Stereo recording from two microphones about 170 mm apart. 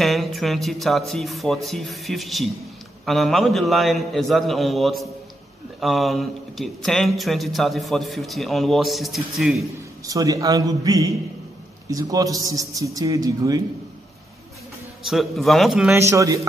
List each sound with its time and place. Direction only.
0.0 s speech: centre (ahead or behind)
10.0 s a man's voice: 20° right (ahead or behind)
15.0 s speech: centre (ahead or behind)
15.9 s a man's voice: 15° right (ahead or behind)